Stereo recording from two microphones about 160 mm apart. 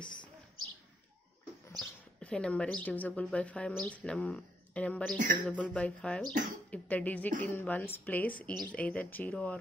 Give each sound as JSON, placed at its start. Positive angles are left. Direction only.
{"t": 0.0, "sound": "a sound", "side_deg": 30}
{"t": 1.8, "sound": "speech", "side_deg": 5}
{"t": 5.1, "sound": "speech", "side_deg": -55}
{"t": 5.5, "sound": "speech", "side_deg": 10}